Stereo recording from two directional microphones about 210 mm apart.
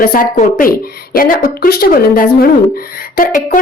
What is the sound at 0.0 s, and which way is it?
Speech, 40° left (ahead or behind).